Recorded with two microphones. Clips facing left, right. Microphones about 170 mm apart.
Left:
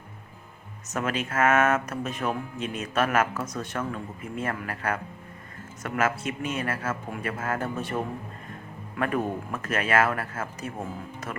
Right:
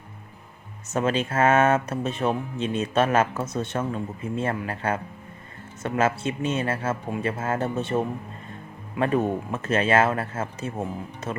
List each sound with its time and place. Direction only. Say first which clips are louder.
0.9 s speech: right 5 dB; 30° right (ahead or behind)